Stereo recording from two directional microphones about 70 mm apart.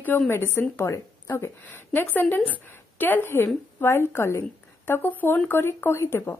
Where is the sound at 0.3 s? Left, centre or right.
Left.